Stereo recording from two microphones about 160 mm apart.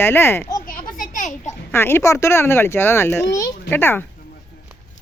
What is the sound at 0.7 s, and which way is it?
Children playing, 55° left (ahead or behind).